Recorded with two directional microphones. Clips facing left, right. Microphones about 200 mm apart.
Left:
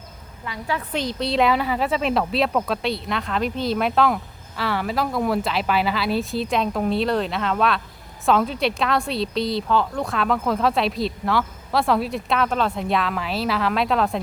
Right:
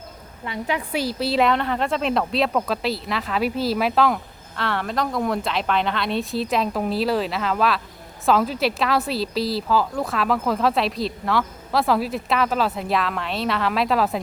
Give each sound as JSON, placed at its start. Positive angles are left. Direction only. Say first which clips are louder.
{"t": 0.4, "sound": "a woman's voice", "louder": "right 2 dB", "side_deg": -25}
{"t": 0.8, "sound": "speech", "louder": "right 1 dB", "side_deg": -5}